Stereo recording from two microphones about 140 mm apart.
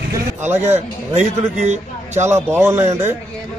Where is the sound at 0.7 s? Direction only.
55° right (ahead or behind).